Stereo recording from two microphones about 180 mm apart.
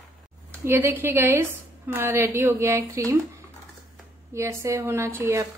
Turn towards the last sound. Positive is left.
turn(degrees=-15)  # may be behind; listen again after turning